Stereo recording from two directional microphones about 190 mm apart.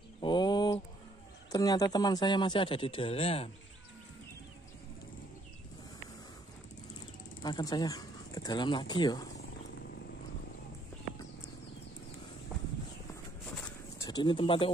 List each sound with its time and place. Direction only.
0.2 s a sound: 25° left (ahead or behind)
1.5 s a man's voice: 20° left (ahead or behind)
7.4 s a man's voice: 20° left (ahead or behind)
13.9 s speech: 20° left (ahead or behind)